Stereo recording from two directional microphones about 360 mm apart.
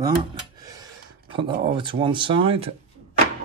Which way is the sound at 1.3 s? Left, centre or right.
Centre.